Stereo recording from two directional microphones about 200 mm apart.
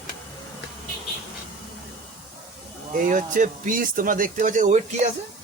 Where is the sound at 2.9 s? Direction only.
40° right (ahead or behind).